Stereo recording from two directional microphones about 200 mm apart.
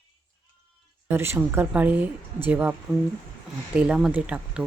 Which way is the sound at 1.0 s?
10° right (ahead or behind).